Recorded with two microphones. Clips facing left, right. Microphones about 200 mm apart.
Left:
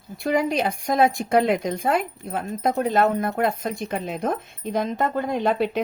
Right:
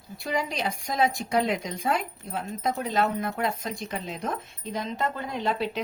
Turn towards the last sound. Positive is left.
turn(degrees=55)  # may be behind; listen again after turning